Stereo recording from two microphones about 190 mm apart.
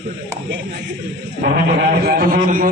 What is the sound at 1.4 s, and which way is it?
Speech, 55° right (ahead or behind).